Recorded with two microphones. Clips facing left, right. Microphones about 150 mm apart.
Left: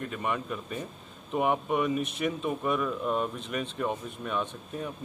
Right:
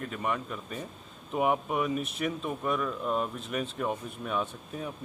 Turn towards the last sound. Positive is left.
turn(degrees=0)  # may be behind; listen again after turning